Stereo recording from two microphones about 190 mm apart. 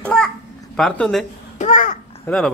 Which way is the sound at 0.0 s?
5° left (ahead or behind).